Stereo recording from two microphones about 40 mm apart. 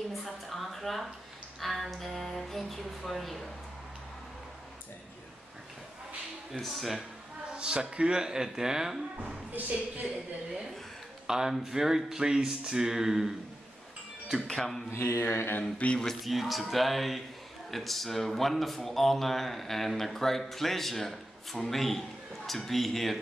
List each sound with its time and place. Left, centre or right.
0.2 s a woman's voice: centre
6.6 s speech: centre
7.5 s speech: right
9.5 s speech: right
11.2 s speech: centre
14.5 s speech: centre
14.9 s mantra: left
15.8 s speech: left
16.2 s speech: centre